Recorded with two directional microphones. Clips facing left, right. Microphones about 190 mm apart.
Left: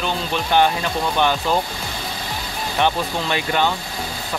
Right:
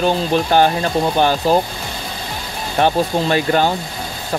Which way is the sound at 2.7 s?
40° right (ahead or behind).